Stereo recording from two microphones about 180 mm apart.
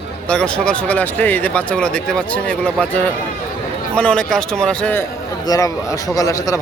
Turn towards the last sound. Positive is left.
turn(degrees=20)  # may be behind; listen again after turning